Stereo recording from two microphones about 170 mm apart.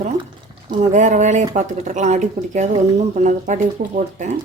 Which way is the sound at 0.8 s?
45° right (ahead or behind).